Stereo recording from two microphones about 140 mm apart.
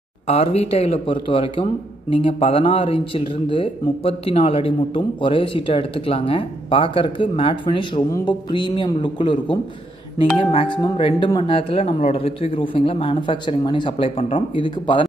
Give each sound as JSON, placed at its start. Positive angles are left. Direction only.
{"t": 0.3, "sound": "a man's voice", "side_deg": 45}
{"t": 10.4, "sound": "a man's voice", "side_deg": 40}